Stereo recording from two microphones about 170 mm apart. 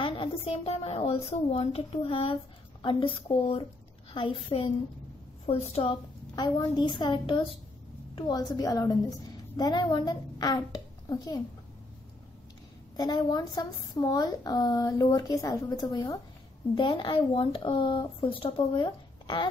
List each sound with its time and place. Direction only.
0.0 s a woman's voice: 35° left (ahead or behind)
6.3 s speech: 25° left (ahead or behind)
12.9 s speech: 25° left (ahead or behind)